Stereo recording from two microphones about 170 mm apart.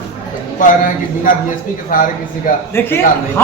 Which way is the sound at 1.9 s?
55° left (ahead or behind).